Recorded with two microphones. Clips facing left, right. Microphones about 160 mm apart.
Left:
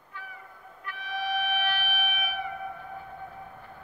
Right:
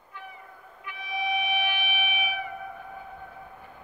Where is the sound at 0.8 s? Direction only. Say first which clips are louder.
Right 1 dB; 15° right (ahead or behind).